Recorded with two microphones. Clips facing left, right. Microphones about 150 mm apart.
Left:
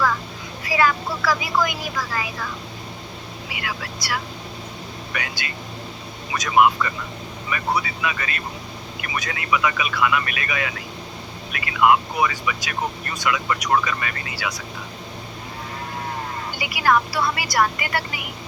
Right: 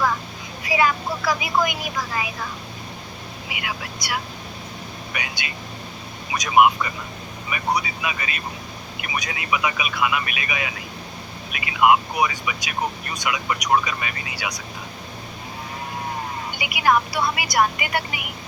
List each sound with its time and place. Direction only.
0.6 s speech: 15° right (ahead or behind)
3.5 s speech: 15° right (ahead or behind)
16.6 s speech: 15° right (ahead or behind)